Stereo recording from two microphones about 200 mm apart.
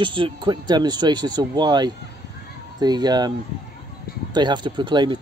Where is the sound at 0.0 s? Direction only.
25° right (ahead or behind).